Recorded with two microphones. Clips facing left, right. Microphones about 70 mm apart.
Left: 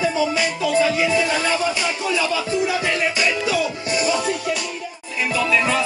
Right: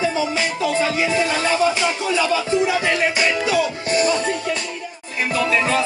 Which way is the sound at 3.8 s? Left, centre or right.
Right.